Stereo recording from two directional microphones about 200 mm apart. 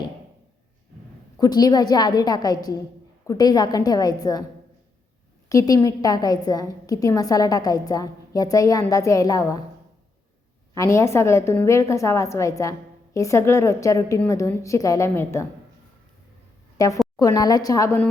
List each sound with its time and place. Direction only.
1.4 s a woman's voice: 20° left (ahead or behind)
5.5 s a woman's voice: 15° left (ahead or behind)
10.8 s a woman's voice: 15° left (ahead or behind)
16.7 s a woman's voice: 15° left (ahead or behind)